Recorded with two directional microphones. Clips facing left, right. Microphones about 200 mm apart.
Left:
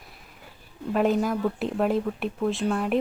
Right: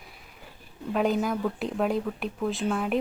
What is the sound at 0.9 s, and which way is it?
Speech, centre (ahead or behind).